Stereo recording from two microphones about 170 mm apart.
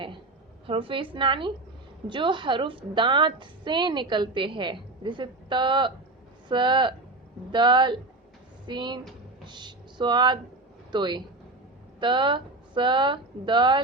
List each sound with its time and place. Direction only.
0.7 s a woman's voice: 30° right (ahead or behind)